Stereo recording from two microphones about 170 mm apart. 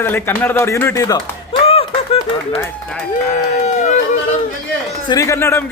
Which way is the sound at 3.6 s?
45° left (ahead or behind).